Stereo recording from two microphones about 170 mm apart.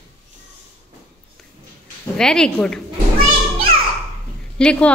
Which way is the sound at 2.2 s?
5° left (ahead or behind).